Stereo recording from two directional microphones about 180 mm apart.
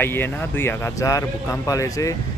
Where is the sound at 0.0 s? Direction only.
10° left (ahead or behind).